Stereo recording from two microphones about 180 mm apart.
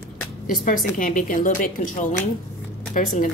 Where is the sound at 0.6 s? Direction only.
45° left (ahead or behind).